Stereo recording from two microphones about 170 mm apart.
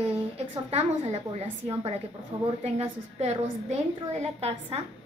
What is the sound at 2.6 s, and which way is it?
A woman's voice, 40° right (ahead or behind).